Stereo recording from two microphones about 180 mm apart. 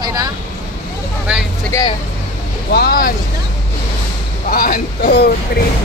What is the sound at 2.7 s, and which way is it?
Speech, 60° left (ahead or behind).